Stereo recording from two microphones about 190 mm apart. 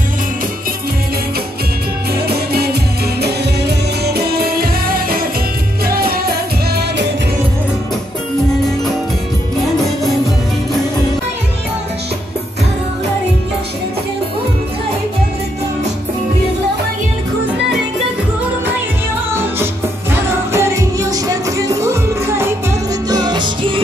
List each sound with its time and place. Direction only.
2.2 s music: 55° right (ahead or behind)
19.6 s music: 15° right (ahead or behind)